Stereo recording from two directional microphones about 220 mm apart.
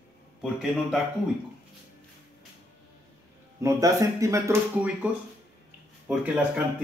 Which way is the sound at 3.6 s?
15° right (ahead or behind).